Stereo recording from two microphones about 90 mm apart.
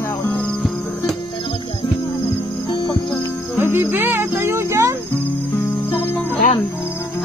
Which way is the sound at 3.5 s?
25° right (ahead or behind).